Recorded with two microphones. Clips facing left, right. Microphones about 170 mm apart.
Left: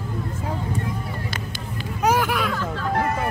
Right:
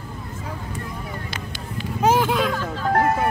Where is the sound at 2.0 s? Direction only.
25° right (ahead or behind).